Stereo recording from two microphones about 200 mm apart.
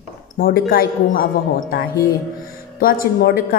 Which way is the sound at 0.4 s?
50° left (ahead or behind).